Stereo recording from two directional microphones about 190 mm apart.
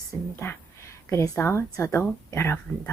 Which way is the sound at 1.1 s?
15° left (ahead or behind).